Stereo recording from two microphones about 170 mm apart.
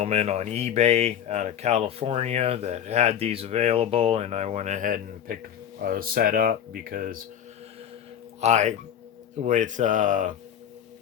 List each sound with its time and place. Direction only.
0.0 s speech: 40° right (ahead or behind); by 7.2 s 55° right (ahead or behind)
8.4 s speech: 40° right (ahead or behind)